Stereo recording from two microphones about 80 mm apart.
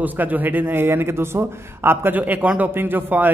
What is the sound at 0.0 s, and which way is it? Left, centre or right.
A man's voice, right.